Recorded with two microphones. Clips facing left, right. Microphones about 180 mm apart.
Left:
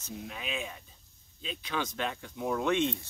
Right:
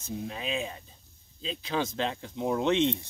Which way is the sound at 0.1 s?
30° right (ahead or behind).